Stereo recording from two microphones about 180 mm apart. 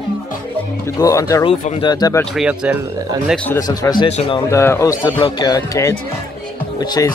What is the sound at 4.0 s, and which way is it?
Speech, 30° left (ahead or behind).